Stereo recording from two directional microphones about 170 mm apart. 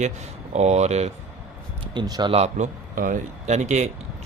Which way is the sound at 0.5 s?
40° right (ahead or behind).